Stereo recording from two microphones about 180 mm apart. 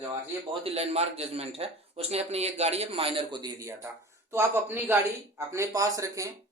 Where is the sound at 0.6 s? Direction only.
35° right (ahead or behind); by 6.3 s 20° right (ahead or behind).